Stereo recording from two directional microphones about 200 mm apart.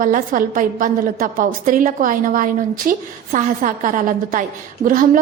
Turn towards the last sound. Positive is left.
turn(degrees=-40)  # may be behind; listen again after turning